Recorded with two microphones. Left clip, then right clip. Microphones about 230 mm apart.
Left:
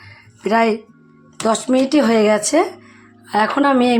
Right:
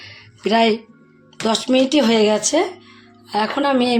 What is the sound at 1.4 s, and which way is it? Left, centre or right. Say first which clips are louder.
A woman's voice: left 1 dB; centre.